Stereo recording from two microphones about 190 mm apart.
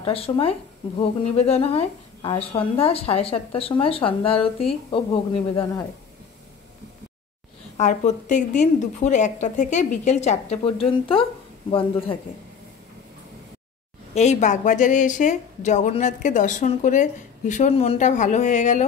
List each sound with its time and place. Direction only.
0.0 s speech: 30° left (ahead or behind)
7.7 s speech: 40° left (ahead or behind)
14.1 s speech: 40° left (ahead or behind)